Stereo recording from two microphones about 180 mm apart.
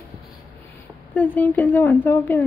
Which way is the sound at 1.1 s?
10° left (ahead or behind).